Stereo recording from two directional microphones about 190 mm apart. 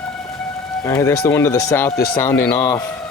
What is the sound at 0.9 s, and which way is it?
Speech, 15° left (ahead or behind).